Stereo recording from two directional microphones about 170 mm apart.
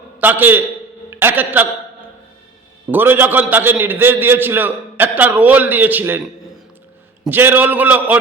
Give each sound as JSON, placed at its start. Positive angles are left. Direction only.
{"t": 0.2, "sound": "a man's voice", "side_deg": -10}
{"t": 2.9, "sound": "a man's voice", "side_deg": -10}
{"t": 7.3, "sound": "a man's voice", "side_deg": -10}